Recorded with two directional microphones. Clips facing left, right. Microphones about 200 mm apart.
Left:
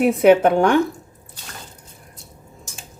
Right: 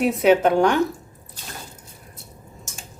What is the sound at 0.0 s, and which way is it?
Speech, 55° left (ahead or behind).